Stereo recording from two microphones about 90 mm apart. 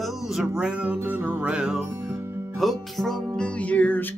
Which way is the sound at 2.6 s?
5° left (ahead or behind).